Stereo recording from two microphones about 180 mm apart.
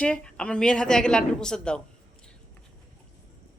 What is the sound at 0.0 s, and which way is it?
A woman's voice, 5° left (ahead or behind).